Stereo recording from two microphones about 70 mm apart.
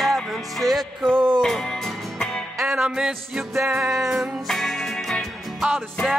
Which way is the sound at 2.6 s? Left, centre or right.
Centre.